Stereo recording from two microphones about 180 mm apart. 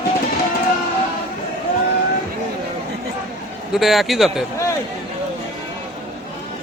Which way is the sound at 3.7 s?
Centre (ahead or behind).